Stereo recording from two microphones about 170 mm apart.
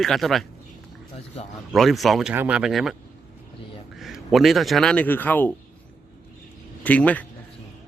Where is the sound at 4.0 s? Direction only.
Centre (ahead or behind).